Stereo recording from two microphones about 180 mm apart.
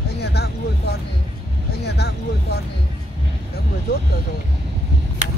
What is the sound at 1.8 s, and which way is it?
Vehicle, 65° left (ahead or behind).